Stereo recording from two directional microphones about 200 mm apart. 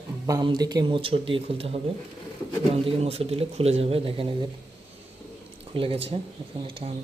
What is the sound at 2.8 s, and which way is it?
Speech, 30° right (ahead or behind).